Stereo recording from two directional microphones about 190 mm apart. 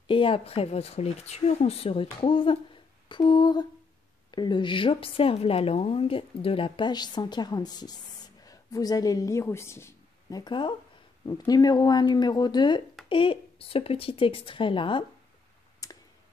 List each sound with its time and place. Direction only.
0.1 s a woman's voice: 30° left (ahead or behind)
15.8 s clicking: 20° left (ahead or behind)